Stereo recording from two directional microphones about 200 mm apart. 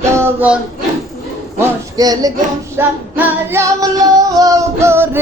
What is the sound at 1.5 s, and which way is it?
Speech, 20° right (ahead or behind).